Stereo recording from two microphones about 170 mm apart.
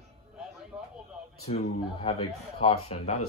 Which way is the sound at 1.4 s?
40° left (ahead or behind).